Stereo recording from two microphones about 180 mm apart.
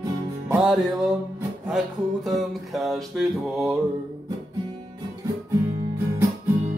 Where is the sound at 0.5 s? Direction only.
Centre (ahead or behind).